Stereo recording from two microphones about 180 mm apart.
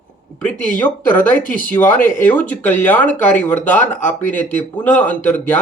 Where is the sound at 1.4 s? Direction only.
50° left (ahead or behind).